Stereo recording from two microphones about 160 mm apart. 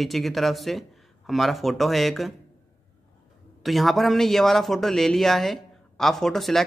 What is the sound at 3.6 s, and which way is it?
A man's voice, centre (ahead or behind).